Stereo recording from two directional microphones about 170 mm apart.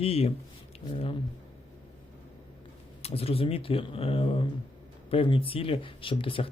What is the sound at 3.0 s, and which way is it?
Speech, 35° left (ahead or behind).